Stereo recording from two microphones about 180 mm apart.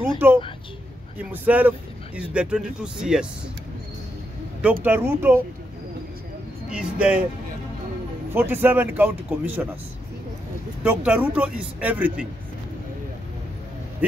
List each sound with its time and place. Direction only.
0.2 s speech: 10° right (ahead or behind)
4.8 s speech: 10° right (ahead or behind)
6.7 s speech: 5° right (ahead or behind)
8.3 s speech: 10° right (ahead or behind)
10.8 s speech: 5° right (ahead or behind)